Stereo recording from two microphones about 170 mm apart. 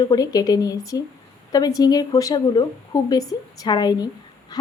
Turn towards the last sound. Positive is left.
turn(degrees=25)  # may be behind; listen again after turning